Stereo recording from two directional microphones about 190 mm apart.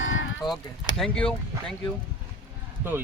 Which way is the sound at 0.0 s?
90° left.